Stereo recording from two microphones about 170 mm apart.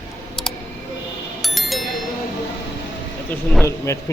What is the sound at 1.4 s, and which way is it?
Music, centre (ahead or behind).